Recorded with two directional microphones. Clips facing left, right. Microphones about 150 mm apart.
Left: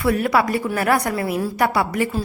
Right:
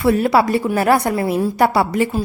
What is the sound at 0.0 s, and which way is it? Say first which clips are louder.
A woman's voice: right 4 dB; 25° right (ahead or behind).